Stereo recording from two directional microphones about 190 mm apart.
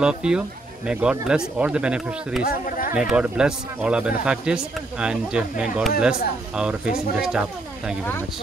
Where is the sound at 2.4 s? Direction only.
50° left (ahead or behind).